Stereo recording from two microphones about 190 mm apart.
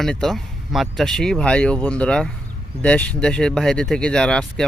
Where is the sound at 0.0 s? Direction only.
Centre (ahead or behind).